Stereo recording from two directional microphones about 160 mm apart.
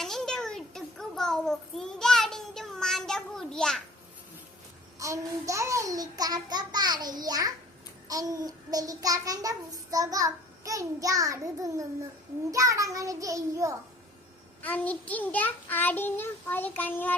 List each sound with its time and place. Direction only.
0.0 s child singing: 5° left (ahead or behind)
4.9 s a child's voice: 20° right (ahead or behind)
14.6 s child singing: 10° left (ahead or behind)